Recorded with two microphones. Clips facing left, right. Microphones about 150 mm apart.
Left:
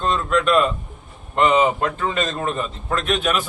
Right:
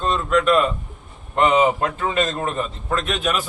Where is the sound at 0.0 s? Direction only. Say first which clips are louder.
Right 1 dB; centre (ahead or behind).